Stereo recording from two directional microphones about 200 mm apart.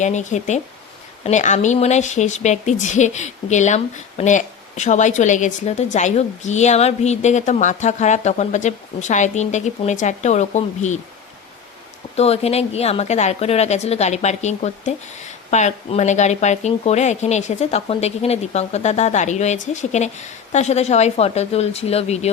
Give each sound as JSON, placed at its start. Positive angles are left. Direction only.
{"t": 0.0, "sound": "speech", "side_deg": 35}
{"t": 12.1, "sound": "speech", "side_deg": 30}